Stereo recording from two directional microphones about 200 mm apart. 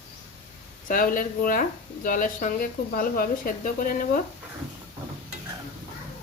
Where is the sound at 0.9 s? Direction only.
45° left (ahead or behind).